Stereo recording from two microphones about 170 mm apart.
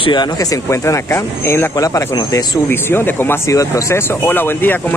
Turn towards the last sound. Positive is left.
turn(degrees=10)  # may be behind; listen again after turning